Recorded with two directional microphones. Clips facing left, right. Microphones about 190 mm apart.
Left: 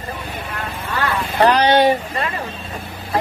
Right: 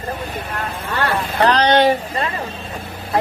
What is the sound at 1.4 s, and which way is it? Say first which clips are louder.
Speech: left 1 dB; 10° left (ahead or behind).